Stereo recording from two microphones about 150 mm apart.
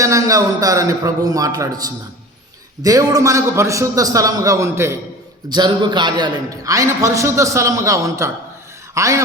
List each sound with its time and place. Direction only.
0.0 s a man's voice: 20° right (ahead or behind)
2.8 s a man's voice: 25° right (ahead or behind)
5.5 s a man's voice: 30° right (ahead or behind)